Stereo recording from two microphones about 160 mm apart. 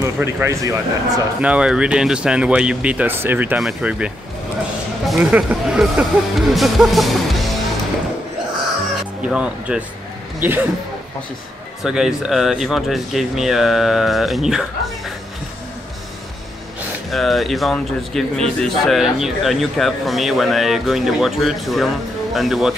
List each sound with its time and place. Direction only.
0.0 s speech: 15° right (ahead or behind)
1.4 s a man's voice: 5° right (ahead or behind)
9.2 s speech: 5° right (ahead or behind)
11.8 s a man's voice: 5° right (ahead or behind)
17.1 s a man's voice: centre (ahead or behind)